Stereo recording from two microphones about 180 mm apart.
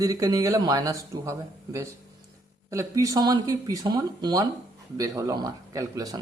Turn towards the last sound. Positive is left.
turn(degrees=-20)  # may be behind; listen again after turning